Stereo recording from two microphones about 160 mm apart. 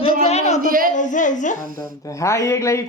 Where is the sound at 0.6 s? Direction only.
60° right (ahead or behind).